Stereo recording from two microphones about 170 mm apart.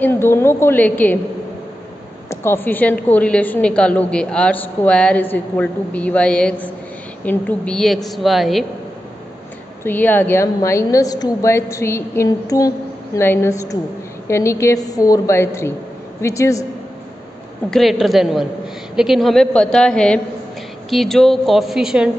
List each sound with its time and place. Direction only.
0.0 s a woman's voice: 15° left (ahead or behind)
2.2 s a woman's voice: 15° left (ahead or behind)
9.8 s a woman's voice: 10° left (ahead or behind)
17.6 s a woman's voice: centre (ahead or behind)